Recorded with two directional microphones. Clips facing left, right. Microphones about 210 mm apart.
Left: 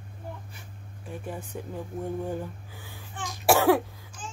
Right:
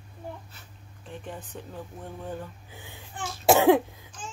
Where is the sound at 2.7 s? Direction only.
20° right (ahead or behind).